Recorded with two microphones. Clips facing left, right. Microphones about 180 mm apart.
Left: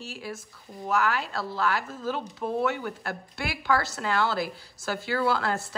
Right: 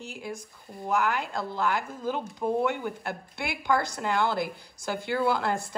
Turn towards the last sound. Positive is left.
turn(degrees=-15)  # may be behind; listen again after turning